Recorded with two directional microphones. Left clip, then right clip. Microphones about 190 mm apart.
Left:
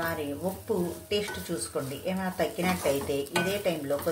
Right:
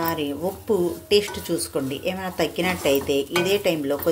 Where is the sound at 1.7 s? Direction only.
45° right (ahead or behind).